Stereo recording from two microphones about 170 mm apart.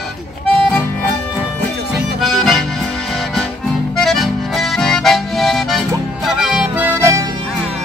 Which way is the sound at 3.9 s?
Centre (ahead or behind).